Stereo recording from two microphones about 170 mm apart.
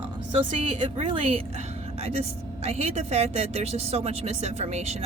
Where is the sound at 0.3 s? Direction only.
30° right (ahead or behind).